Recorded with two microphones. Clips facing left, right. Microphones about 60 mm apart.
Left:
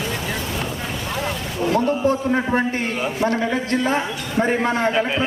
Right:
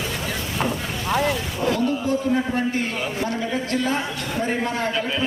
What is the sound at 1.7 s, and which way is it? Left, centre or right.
Speech, left.